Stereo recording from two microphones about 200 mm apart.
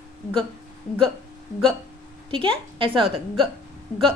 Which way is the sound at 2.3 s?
25° right (ahead or behind).